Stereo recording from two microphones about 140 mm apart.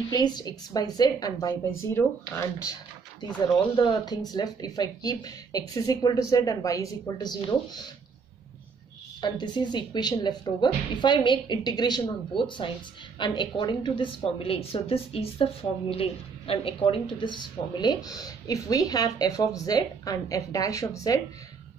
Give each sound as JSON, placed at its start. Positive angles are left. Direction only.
{"t": 0.1, "sound": "speech", "side_deg": 30}
{"t": 3.7, "sound": "speech", "side_deg": 35}
{"t": 9.2, "sound": "speech", "side_deg": 30}